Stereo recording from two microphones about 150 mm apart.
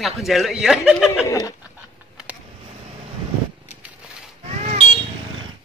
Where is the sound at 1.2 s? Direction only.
20° left (ahead or behind).